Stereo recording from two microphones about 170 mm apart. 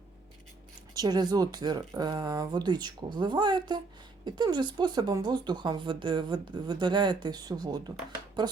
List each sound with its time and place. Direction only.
0.9 s speech: 25° right (ahead or behind)